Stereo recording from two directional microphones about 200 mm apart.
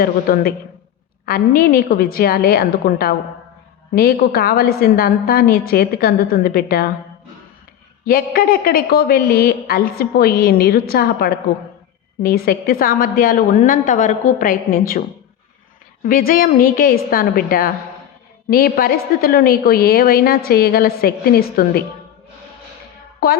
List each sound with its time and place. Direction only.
0.0 s a woman's voice: 50° left (ahead or behind)
8.0 s a woman's voice: 50° left (ahead or behind)
16.0 s a woman's voice: 45° left (ahead or behind)